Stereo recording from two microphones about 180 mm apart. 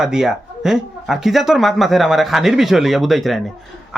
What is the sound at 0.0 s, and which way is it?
Speech, 5° right (ahead or behind).